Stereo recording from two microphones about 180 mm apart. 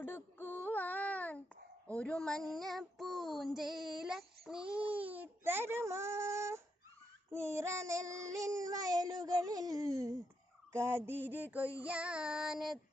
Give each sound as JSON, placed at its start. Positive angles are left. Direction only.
{"t": 0.0, "sound": "a sound", "side_deg": 10}
{"t": 1.9, "sound": "child singing", "side_deg": 5}
{"t": 4.9, "sound": "speech", "side_deg": -10}
{"t": 7.3, "sound": "child singing", "side_deg": -15}
{"t": 10.7, "sound": "fowl", "side_deg": -15}
{"t": 11.8, "sound": "child singing", "side_deg": -5}